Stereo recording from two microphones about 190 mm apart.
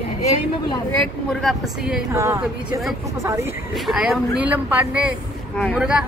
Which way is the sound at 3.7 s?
Centre (ahead or behind).